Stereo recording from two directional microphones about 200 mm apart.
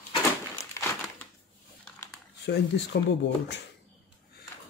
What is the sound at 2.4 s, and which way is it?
Speech, 60° left (ahead or behind).